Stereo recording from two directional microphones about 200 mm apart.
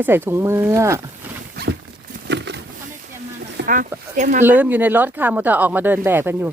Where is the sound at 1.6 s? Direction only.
50° right (ahead or behind).